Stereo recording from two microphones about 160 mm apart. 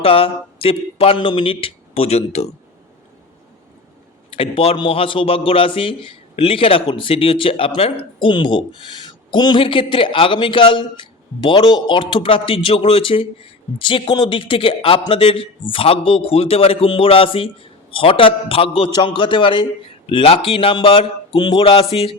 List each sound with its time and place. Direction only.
0.0 s speech: 35° left (ahead or behind)
4.3 s a man's voice: 35° left (ahead or behind)